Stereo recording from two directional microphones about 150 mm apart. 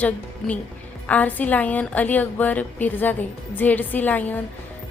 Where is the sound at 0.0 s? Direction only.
10° left (ahead or behind).